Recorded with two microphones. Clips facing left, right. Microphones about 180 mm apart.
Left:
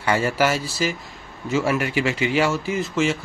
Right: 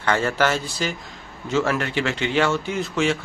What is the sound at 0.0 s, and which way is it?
A man's voice, 10° left (ahead or behind).